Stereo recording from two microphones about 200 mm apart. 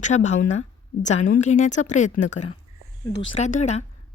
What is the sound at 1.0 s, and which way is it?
A woman's voice, 35° left (ahead or behind).